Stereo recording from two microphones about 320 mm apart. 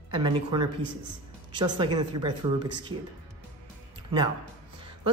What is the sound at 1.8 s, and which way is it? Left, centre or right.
Speech, centre.